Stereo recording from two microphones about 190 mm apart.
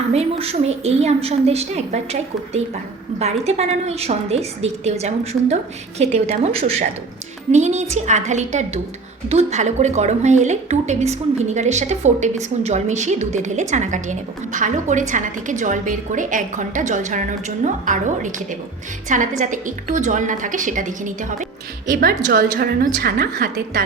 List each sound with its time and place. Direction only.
0.1 s a woman's voice: 35° right (ahead or behind)
22.5 s a woman's voice: 55° right (ahead or behind)